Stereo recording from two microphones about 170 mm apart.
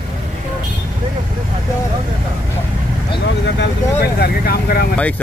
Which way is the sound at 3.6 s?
65° left (ahead or behind).